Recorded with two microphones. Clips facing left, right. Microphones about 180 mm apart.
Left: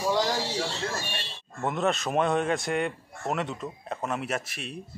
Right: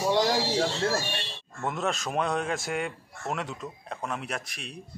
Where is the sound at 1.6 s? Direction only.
Centre (ahead or behind).